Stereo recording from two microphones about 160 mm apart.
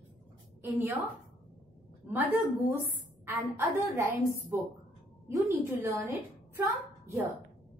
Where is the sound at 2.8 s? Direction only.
15° right (ahead or behind).